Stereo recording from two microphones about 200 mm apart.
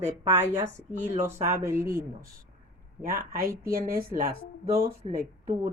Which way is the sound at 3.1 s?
50° right (ahead or behind).